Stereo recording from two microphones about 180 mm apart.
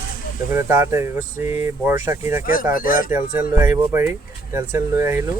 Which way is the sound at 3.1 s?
10° right (ahead or behind).